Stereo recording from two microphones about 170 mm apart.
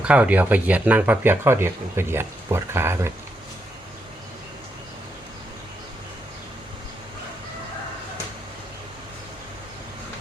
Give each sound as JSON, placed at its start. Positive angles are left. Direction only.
{"t": 0.0, "sound": "speech", "side_deg": -10}